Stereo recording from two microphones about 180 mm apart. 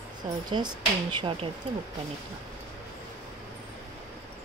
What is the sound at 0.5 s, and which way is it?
Speech, 25° right (ahead or behind).